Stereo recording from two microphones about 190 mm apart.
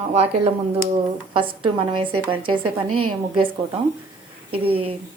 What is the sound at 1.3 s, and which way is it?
A woman's voice, 25° right (ahead or behind).